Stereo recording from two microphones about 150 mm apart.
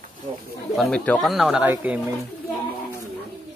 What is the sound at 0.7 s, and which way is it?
Speech, 5° left (ahead or behind).